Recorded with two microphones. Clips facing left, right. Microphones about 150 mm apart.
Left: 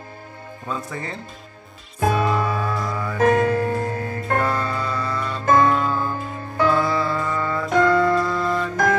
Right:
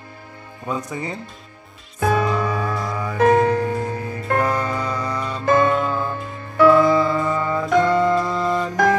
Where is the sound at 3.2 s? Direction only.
45° left (ahead or behind).